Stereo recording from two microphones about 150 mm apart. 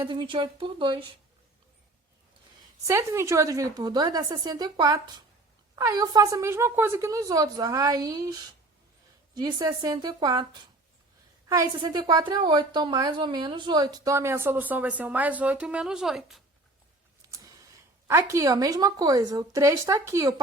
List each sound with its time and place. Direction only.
0.0 s speech: 35° right (ahead or behind)
2.8 s a woman's voice: 20° right (ahead or behind); by 16.4 s centre (ahead or behind)
17.3 s a sound: 25° right (ahead or behind)
18.1 s a woman's voice: 20° right (ahead or behind)